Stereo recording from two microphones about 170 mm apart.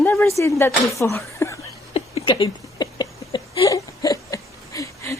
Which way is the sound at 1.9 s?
30° left (ahead or behind).